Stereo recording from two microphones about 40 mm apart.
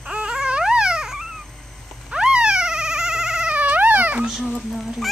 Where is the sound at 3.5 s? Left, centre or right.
Right.